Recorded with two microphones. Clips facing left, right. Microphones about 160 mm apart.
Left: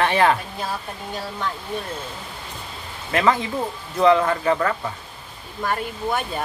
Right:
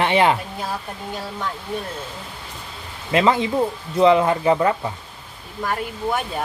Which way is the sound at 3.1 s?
20° right (ahead or behind).